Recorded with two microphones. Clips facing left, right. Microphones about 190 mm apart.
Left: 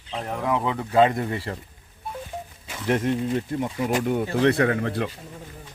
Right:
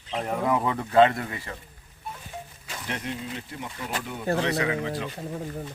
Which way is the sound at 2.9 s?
50° left (ahead or behind).